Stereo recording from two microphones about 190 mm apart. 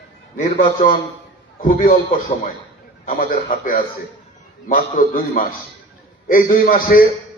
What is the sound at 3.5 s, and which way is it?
Speech, 45° left (ahead or behind).